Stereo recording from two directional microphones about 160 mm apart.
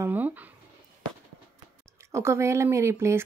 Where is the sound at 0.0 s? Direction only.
10° right (ahead or behind).